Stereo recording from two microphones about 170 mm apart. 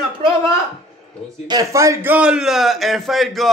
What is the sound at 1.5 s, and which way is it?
A man's voice, 20° right (ahead or behind).